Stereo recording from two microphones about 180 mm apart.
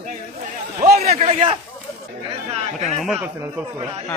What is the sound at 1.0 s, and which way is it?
Speech, 35° right (ahead or behind).